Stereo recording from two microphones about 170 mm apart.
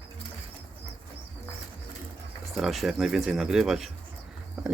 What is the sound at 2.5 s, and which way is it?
Speech, centre (ahead or behind).